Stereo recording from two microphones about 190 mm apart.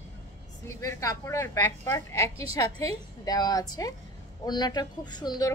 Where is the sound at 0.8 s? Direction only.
15° left (ahead or behind).